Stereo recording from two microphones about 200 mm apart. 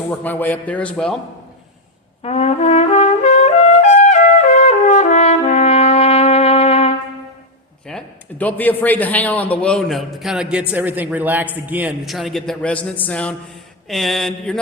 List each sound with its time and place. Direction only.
0.1 s a man's voice: 10° left (ahead or behind)
2.2 s trumpet: 30° left (ahead or behind)
7.9 s a man's voice: 5° left (ahead or behind)